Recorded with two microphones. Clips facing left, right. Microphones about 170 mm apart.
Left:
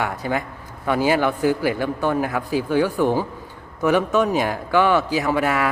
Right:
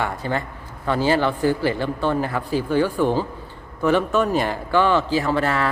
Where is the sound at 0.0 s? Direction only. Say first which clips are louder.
Left 1 dB; 10° left (ahead or behind).